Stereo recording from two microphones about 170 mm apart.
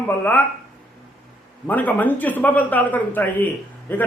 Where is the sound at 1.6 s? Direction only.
10° left (ahead or behind).